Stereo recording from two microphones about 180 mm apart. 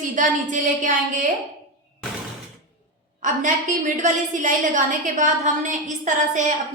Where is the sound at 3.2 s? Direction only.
45° right (ahead or behind).